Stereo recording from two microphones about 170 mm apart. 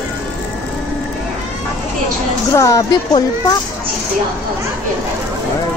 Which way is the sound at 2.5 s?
20° left (ahead or behind).